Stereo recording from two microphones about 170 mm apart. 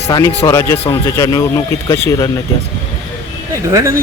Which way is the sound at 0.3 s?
15° left (ahead or behind).